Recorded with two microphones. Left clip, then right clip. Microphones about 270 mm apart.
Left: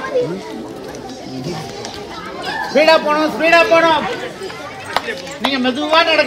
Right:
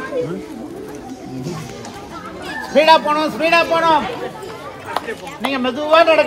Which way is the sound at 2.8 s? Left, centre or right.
Right.